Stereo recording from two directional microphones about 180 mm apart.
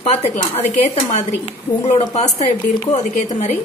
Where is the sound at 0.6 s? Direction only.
40° left (ahead or behind).